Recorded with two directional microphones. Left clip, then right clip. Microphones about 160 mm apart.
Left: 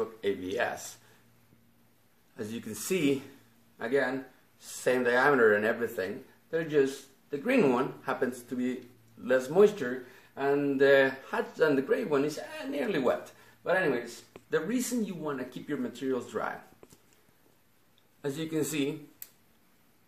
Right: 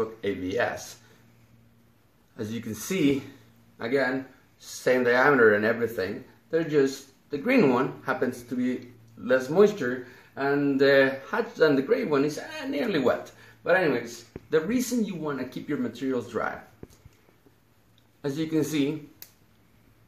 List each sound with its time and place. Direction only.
0.2 s speech: 15° left (ahead or behind)
2.3 s speech: 10° left (ahead or behind)
18.2 s speech: 10° left (ahead or behind)